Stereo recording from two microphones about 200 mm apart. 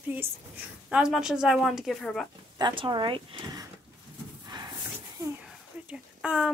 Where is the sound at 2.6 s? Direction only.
20° right (ahead or behind).